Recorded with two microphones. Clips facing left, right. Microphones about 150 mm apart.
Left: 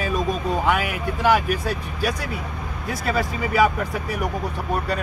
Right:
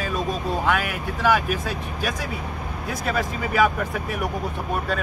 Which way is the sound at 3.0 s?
5° left (ahead or behind).